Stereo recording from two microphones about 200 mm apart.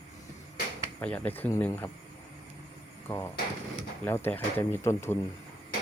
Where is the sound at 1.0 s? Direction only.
5° left (ahead or behind).